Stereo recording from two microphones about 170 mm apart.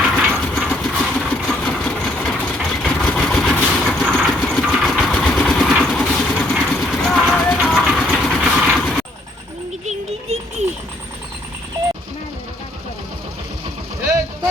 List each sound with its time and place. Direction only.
0.0 s a sound: 5° right (ahead or behind)
0.7 s sewing machine: 5° left (ahead or behind)
2.4 s vehicle: 5° left (ahead or behind)
9.8 s music: 35° right (ahead or behind)